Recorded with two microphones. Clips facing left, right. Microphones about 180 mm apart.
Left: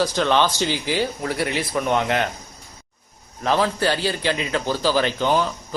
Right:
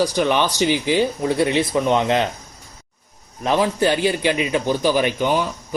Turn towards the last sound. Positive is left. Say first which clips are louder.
# right 1 dB
turn(degrees=-15)  # may be behind; listen again after turning